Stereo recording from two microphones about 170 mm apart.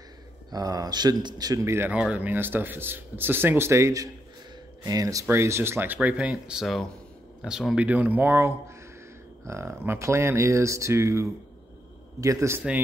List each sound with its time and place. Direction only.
0.5 s speech: 20° right (ahead or behind)